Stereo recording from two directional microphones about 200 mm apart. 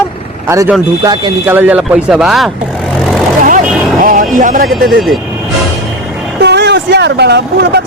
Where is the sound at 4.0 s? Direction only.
40° right (ahead or behind).